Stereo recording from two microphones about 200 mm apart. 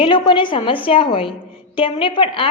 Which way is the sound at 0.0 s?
25° left (ahead or behind).